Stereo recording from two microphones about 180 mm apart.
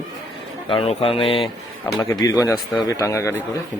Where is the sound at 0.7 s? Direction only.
30° left (ahead or behind).